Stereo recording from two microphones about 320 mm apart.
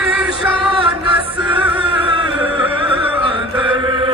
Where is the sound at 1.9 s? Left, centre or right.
Centre.